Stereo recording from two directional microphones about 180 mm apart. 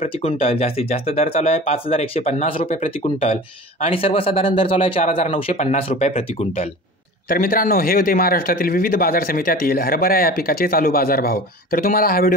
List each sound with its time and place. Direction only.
0.0 s speech: 35° left (ahead or behind)
7.2 s a man's voice: 50° left (ahead or behind)